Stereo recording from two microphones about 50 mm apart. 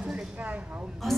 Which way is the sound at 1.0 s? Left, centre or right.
Centre.